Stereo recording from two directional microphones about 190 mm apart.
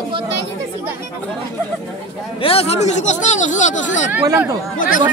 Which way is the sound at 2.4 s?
30° left (ahead or behind).